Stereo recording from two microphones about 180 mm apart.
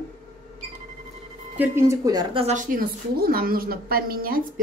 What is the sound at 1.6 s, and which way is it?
Speech, 15° right (ahead or behind).